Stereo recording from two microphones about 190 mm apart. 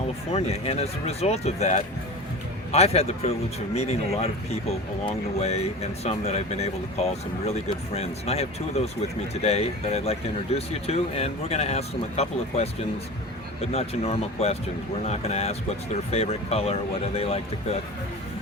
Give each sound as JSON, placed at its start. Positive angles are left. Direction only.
{"t": 0.3, "sound": "speech", "side_deg": 35}
{"t": 5.4, "sound": "speech", "side_deg": 35}
{"t": 13.7, "sound": "speech", "side_deg": 35}